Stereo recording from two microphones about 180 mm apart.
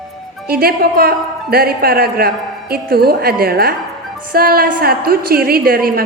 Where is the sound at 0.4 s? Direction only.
60° right (ahead or behind).